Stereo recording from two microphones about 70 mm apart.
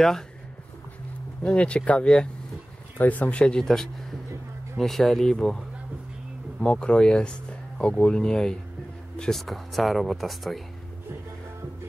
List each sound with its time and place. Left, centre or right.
1.4 s speech: centre
6.6 s speech: centre